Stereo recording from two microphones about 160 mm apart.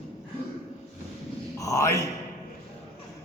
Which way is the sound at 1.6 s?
20° left (ahead or behind).